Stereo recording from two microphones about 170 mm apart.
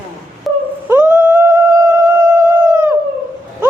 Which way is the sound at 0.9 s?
10° right (ahead or behind).